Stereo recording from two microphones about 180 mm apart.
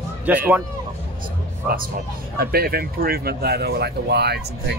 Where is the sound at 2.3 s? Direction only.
55° right (ahead or behind).